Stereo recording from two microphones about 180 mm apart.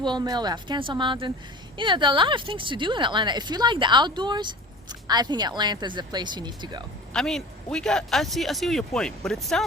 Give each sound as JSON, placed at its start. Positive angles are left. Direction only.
{"t": 0.0, "sound": "a woman's voice", "side_deg": -25}
{"t": 7.1, "sound": "speech", "side_deg": 0}